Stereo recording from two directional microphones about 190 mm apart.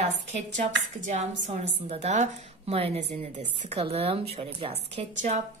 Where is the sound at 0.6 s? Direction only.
40° right (ahead or behind).